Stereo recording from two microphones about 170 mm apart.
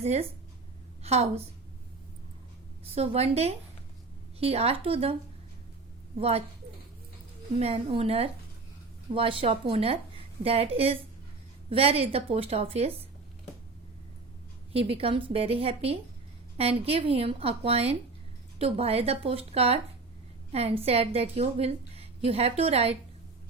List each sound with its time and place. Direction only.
0.0 s a woman's voice: 40° right (ahead or behind)
2.8 s a woman's voice: 35° right (ahead or behind)
6.1 s a woman's voice: 35° right (ahead or behind)
7.6 s a woman's voice: 35° right (ahead or behind)
14.7 s a woman's voice: 35° right (ahead or behind)